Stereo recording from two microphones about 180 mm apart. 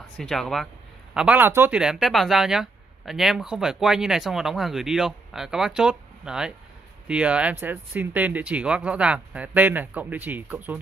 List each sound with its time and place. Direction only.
0.2 s speech: centre (ahead or behind)